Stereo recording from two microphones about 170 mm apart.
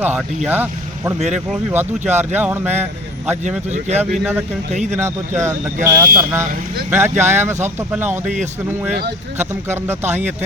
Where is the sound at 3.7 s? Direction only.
40° right (ahead or behind).